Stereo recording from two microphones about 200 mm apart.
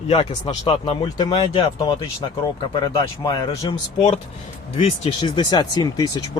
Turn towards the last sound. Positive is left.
turn(degrees=20)  # may be behind; listen again after turning